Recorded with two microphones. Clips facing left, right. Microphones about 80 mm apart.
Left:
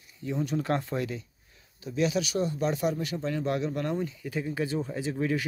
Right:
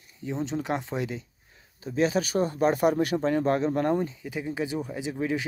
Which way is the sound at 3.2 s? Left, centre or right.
Right.